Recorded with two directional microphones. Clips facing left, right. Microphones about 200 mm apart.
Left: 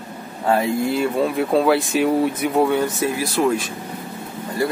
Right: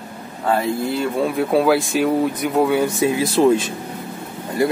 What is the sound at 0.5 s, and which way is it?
Speech, centre (ahead or behind).